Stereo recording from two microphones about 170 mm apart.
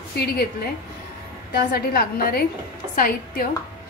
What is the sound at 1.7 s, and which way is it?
A woman's voice, 65° left (ahead or behind).